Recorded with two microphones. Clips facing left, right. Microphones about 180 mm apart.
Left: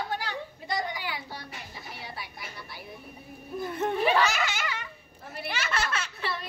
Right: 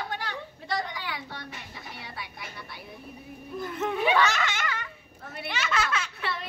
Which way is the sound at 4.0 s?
5° left (ahead or behind).